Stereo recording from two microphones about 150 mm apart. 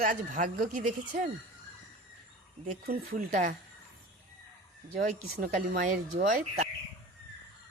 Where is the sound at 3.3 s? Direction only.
60° right (ahead or behind).